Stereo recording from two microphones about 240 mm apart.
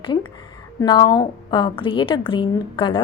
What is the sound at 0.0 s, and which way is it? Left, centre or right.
A woman's voice, centre.